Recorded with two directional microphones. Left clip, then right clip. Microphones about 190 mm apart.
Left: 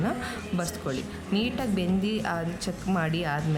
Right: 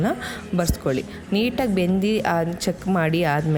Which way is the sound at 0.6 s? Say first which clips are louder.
Right 10 dB; 20° right (ahead or behind).